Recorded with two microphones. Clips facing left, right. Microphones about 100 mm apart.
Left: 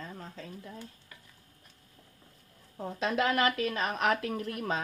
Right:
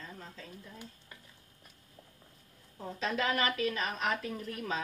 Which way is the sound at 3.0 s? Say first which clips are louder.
Left 4 dB; 55° left (ahead or behind).